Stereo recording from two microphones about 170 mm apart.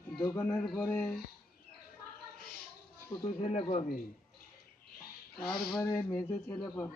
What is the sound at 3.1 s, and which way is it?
Speech, 35° left (ahead or behind).